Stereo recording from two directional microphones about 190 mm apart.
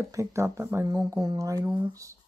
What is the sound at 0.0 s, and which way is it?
Speech, 15° right (ahead or behind).